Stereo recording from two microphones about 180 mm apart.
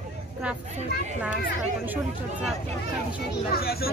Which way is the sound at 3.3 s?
60° left (ahead or behind).